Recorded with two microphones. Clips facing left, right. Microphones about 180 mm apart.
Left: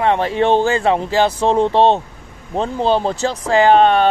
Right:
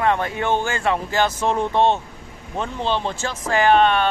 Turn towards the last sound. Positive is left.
turn(degrees=40)  # may be behind; listen again after turning